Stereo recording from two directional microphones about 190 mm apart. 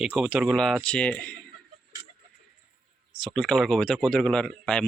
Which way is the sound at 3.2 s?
Centre (ahead or behind).